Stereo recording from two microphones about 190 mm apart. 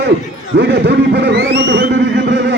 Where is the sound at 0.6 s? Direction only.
60° right (ahead or behind).